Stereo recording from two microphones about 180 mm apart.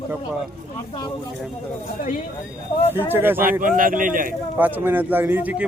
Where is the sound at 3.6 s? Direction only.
50° right (ahead or behind).